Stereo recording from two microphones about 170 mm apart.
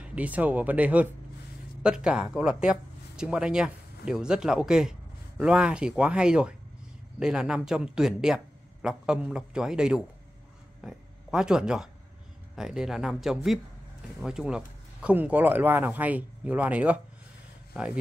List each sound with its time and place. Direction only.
0.0 s speech: 10° right (ahead or behind)